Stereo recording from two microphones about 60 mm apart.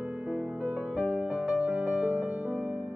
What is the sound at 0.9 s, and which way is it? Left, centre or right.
Music, right.